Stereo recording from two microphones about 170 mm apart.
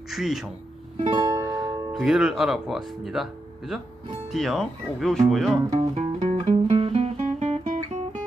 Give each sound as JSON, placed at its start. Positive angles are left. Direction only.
{"t": 0.1, "sound": "speech", "side_deg": 0}
{"t": 1.1, "sound": "music", "side_deg": -20}
{"t": 2.0, "sound": "speech", "side_deg": -5}
{"t": 5.7, "sound": "music", "side_deg": -30}
{"t": 6.3, "sound": "guitar", "side_deg": -35}